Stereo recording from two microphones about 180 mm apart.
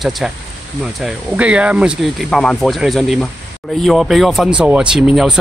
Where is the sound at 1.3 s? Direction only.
5° right (ahead or behind).